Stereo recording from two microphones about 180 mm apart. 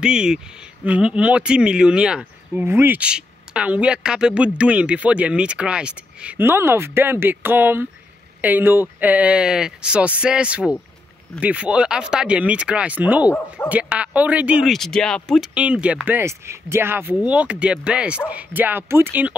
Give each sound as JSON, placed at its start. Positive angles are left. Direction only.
{"t": 0.0, "sound": "speech", "side_deg": -5}